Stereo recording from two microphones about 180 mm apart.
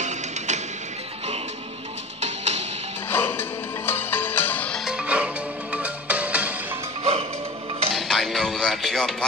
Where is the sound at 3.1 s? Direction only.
10° left (ahead or behind); by 6.5 s 10° right (ahead or behind).